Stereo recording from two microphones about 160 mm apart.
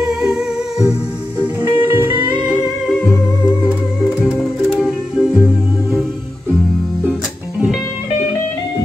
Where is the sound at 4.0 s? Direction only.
Centre (ahead or behind).